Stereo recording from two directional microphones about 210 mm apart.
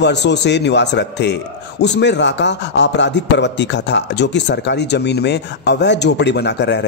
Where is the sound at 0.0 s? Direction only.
55° left (ahead or behind).